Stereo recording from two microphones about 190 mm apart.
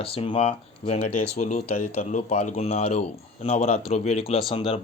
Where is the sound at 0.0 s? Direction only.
30° left (ahead or behind).